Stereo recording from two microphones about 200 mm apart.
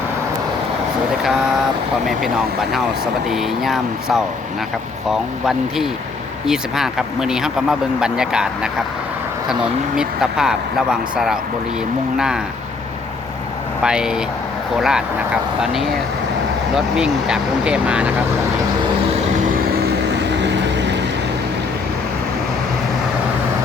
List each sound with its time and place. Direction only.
3.2 s speech: centre (ahead or behind)
5.5 s speech: centre (ahead or behind)
10.0 s speech: 5° right (ahead or behind)
13.8 s speech: 5° right (ahead or behind)
16.7 s speech: 5° right (ahead or behind)
20.4 s vehicle: 60° right (ahead or behind)